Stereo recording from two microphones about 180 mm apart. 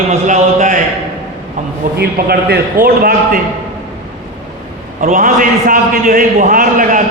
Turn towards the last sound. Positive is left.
turn(degrees=-45)  # may be behind; listen again after turning